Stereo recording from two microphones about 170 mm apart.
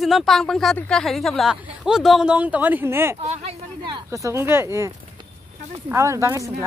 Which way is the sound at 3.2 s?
40° right (ahead or behind).